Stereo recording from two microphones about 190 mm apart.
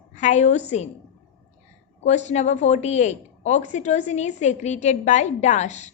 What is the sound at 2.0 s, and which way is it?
A woman's voice, 40° left (ahead or behind).